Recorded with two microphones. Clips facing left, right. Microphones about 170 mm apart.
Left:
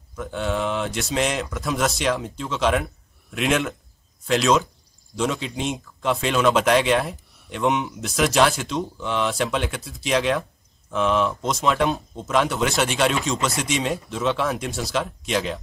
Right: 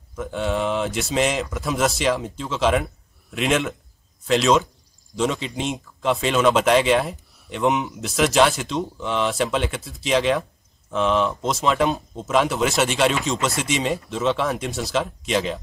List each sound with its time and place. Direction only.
0.1 s speech: centre (ahead or behind)